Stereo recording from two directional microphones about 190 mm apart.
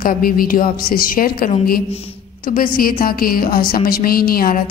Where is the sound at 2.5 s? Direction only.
50° left (ahead or behind).